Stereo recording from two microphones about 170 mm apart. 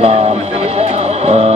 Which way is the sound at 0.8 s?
35° right (ahead or behind).